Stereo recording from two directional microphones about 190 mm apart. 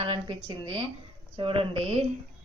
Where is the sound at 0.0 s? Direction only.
30° right (ahead or behind).